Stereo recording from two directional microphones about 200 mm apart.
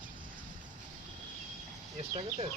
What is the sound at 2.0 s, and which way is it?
Speech, 30° right (ahead or behind).